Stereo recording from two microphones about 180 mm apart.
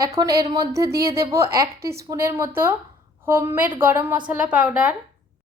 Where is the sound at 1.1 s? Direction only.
15° right (ahead or behind).